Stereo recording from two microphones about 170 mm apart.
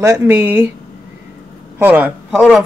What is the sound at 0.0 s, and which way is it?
Speech, 15° right (ahead or behind).